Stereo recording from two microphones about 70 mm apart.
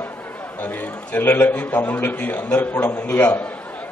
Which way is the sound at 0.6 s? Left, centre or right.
Left.